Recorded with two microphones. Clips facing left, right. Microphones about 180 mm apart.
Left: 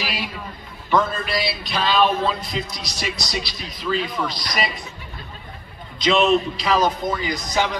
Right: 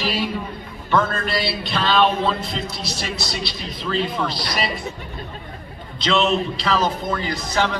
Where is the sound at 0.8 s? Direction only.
Centre (ahead or behind).